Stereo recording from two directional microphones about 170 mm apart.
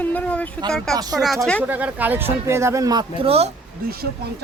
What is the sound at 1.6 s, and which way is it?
Speech, 10° right (ahead or behind).